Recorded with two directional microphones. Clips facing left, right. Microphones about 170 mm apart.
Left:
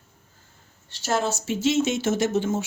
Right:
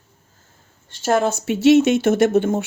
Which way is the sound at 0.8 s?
50° right (ahead or behind).